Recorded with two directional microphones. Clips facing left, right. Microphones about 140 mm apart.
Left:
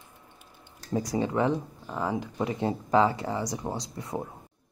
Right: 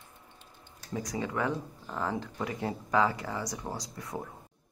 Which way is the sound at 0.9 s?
30° left (ahead or behind).